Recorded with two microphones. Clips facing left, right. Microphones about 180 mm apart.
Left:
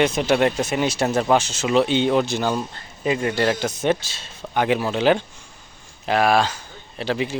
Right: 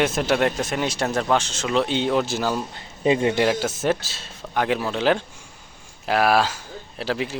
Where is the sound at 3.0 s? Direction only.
25° right (ahead or behind).